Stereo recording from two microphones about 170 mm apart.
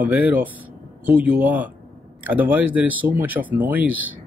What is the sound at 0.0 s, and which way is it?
Speech, 10° right (ahead or behind).